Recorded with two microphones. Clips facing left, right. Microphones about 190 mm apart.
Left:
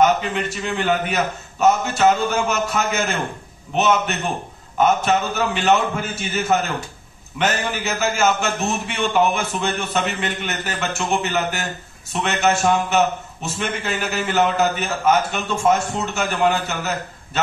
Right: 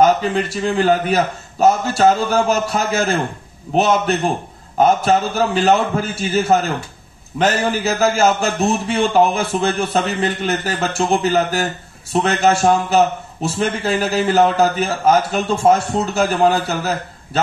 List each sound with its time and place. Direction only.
0.0 s a man's voice: 35° right (ahead or behind)